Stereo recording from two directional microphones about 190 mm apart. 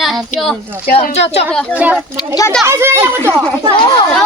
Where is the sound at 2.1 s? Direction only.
20° left (ahead or behind).